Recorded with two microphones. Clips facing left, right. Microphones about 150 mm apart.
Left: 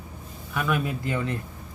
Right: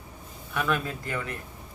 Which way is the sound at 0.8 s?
20° left (ahead or behind).